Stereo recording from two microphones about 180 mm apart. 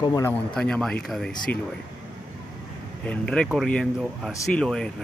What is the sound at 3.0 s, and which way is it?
Speech, 5° left (ahead or behind).